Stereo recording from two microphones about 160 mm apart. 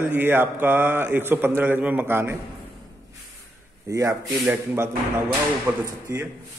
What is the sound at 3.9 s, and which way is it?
A man's voice, 20° right (ahead or behind).